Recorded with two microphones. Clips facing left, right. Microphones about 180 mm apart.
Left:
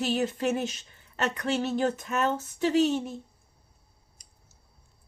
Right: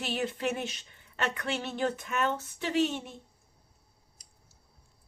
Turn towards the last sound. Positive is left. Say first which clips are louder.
# left 5 dB
turn(degrees=40)  # may be behind; listen again after turning